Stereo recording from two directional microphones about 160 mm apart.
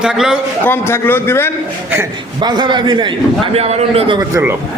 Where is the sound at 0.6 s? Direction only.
15° left (ahead or behind).